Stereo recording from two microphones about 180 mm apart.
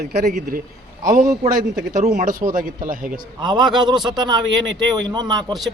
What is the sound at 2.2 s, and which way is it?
Speech, 50° right (ahead or behind).